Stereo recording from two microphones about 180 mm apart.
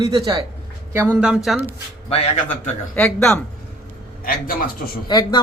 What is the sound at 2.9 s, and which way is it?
Speech, 5° left (ahead or behind).